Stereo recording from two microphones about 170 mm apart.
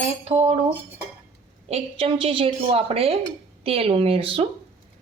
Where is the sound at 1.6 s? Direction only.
35° right (ahead or behind).